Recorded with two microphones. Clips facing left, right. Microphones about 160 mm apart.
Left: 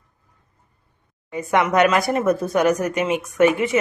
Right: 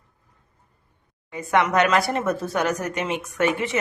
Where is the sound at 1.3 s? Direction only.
15° left (ahead or behind).